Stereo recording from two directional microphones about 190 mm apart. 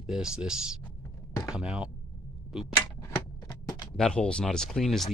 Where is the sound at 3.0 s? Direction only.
20° left (ahead or behind).